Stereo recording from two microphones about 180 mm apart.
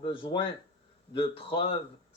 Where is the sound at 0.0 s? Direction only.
30° left (ahead or behind).